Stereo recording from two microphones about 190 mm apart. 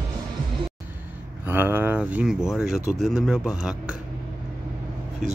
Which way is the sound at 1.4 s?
10° right (ahead or behind).